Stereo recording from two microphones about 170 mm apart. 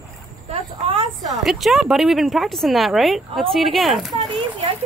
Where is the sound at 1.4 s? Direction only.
Centre (ahead or behind).